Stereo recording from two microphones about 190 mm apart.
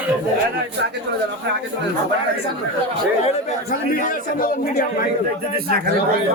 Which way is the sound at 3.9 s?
45° left (ahead or behind).